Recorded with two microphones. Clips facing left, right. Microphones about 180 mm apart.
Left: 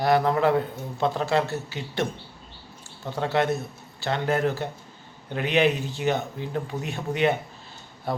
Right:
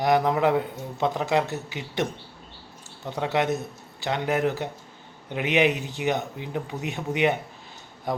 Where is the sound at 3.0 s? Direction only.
15° right (ahead or behind).